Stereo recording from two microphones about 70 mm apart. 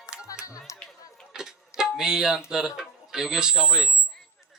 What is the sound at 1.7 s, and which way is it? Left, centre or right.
Speech, centre.